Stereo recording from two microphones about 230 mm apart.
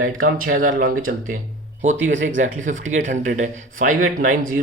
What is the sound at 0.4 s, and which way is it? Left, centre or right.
Speech, right.